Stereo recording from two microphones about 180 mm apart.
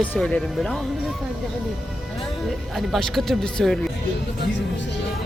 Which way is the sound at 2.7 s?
Centre (ahead or behind).